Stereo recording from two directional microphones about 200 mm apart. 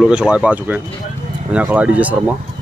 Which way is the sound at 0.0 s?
5° right (ahead or behind).